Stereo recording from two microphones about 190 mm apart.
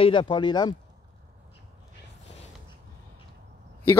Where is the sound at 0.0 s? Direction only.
25° left (ahead or behind).